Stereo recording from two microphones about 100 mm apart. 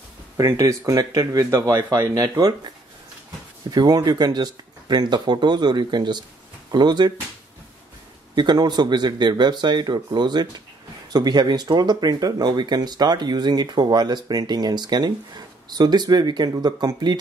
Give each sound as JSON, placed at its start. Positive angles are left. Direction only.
{"t": 0.4, "sound": "speech", "side_deg": -35}
{"t": 3.7, "sound": "speech", "side_deg": -45}
{"t": 8.4, "sound": "speech", "side_deg": -45}